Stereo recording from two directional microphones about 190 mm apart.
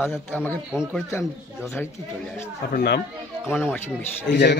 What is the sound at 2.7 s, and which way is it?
Speech, 55° left (ahead or behind).